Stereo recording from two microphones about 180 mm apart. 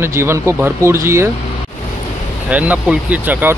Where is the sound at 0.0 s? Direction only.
15° right (ahead or behind).